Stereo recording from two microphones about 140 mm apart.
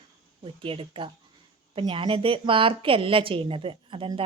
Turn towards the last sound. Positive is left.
turn(degrees=-40)  # may be behind; listen again after turning